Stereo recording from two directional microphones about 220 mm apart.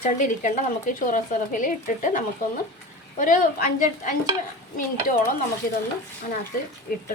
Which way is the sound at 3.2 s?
35° left (ahead or behind).